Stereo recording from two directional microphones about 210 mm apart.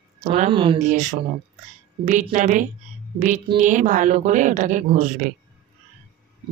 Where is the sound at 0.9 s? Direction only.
35° right (ahead or behind).